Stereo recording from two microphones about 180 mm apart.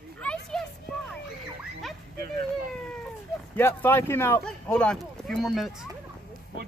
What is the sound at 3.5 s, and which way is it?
Speech, 10° left (ahead or behind).